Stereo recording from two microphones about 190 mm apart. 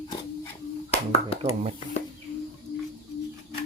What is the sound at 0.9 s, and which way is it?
Finger snapping, 30° left (ahead or behind).